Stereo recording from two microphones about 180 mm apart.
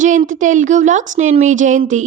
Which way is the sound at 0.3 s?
45° right (ahead or behind).